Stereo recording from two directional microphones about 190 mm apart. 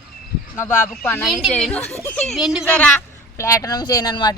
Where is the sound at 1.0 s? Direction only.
10° left (ahead or behind).